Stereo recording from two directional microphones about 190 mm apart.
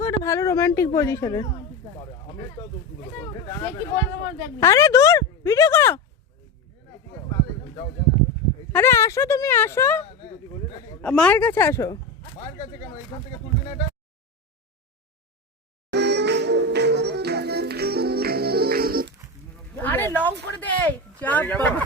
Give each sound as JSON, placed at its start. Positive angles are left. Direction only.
{"t": 0.0, "sound": "speech", "side_deg": 15}
{"t": 3.2, "sound": "speech", "side_deg": 15}
{"t": 8.7, "sound": "speech", "side_deg": 15}
{"t": 13.1, "sound": "speech", "side_deg": 25}
{"t": 15.9, "sound": "music", "side_deg": -60}
{"t": 19.8, "sound": "speech", "side_deg": 10}